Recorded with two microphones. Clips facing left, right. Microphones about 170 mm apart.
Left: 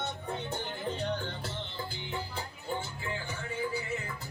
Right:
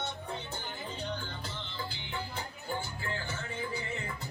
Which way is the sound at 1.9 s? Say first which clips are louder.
Left 2 dB; 35° left (ahead or behind).